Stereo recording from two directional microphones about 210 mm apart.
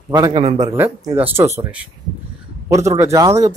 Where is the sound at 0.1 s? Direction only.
20° right (ahead or behind).